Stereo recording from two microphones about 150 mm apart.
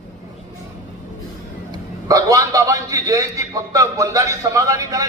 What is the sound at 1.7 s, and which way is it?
A man's voice, 25° right (ahead or behind).